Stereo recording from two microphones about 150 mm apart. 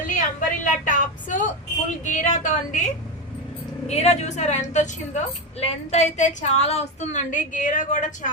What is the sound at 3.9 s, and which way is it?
A woman's voice, 45° left (ahead or behind).